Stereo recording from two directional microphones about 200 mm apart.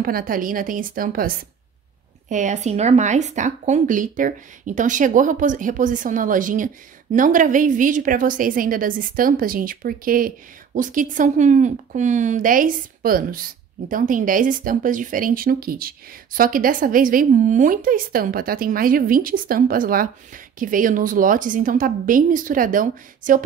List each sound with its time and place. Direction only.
0.0 s a woman's voice: 45° right (ahead or behind)